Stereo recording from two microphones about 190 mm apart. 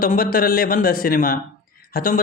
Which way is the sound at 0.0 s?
50° left (ahead or behind).